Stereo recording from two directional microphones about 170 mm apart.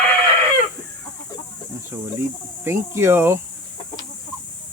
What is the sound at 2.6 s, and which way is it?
Speech, 15° right (ahead or behind).